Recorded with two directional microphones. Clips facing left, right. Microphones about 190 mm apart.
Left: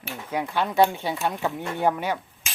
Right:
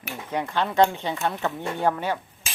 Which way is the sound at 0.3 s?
10° left (ahead or behind).